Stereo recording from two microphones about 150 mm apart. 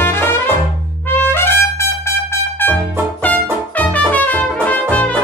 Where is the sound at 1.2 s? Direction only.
15° left (ahead or behind).